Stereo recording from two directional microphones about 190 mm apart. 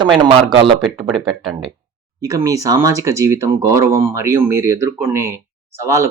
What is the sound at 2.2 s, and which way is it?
Speech, 20° right (ahead or behind).